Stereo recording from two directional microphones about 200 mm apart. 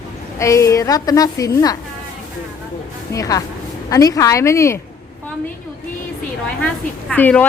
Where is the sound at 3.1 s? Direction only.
15° left (ahead or behind).